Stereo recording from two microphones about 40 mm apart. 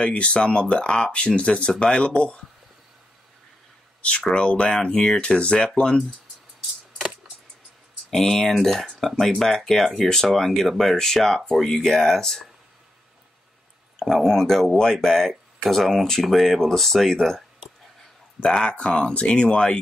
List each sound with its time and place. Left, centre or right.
0.0 s speech: left
4.4 s speech: left
8.1 s speech: centre
13.9 s speech: centre
18.4 s speech: centre